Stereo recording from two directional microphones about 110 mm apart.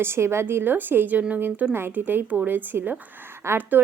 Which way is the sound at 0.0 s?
20° right (ahead or behind).